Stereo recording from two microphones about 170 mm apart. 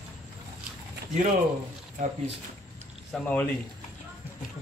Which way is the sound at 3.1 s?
5° left (ahead or behind).